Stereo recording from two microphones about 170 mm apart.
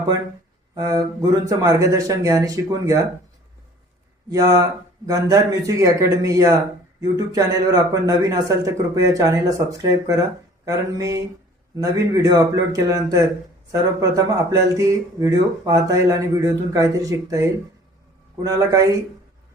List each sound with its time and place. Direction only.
0.7 s speech: 20° right (ahead or behind)
4.3 s speech: 20° right (ahead or behind)
18.4 s speech: 20° right (ahead or behind)